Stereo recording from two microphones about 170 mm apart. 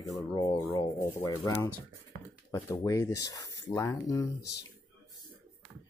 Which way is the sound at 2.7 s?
20° left (ahead or behind).